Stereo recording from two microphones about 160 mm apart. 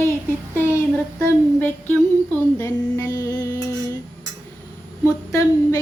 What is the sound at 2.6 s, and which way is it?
Music, 20° left (ahead or behind).